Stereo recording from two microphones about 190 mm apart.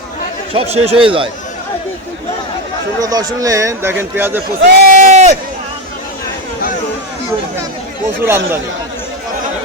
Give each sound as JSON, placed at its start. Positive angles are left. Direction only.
{"t": 0.5, "sound": "speech", "side_deg": -30}
{"t": 3.0, "sound": "speech", "side_deg": -20}
{"t": 4.6, "sound": "a sound", "side_deg": -40}
{"t": 8.2, "sound": "speech", "side_deg": -10}